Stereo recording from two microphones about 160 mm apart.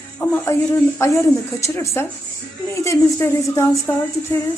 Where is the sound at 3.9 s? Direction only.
20° left (ahead or behind).